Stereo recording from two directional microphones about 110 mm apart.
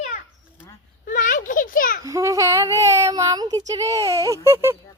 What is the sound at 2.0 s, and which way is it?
Speech, 30° right (ahead or behind).